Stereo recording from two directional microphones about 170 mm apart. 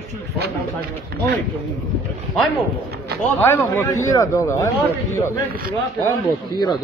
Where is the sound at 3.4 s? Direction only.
15° left (ahead or behind).